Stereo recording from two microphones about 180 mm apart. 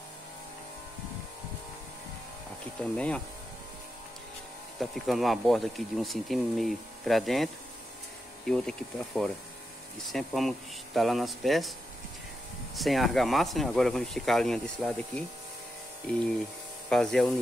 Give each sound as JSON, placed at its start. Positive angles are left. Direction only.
{"t": 2.8, "sound": "speech", "side_deg": 5}
{"t": 4.7, "sound": "speech", "side_deg": 0}
{"t": 8.5, "sound": "speech", "side_deg": 5}
{"t": 12.7, "sound": "speech", "side_deg": 0}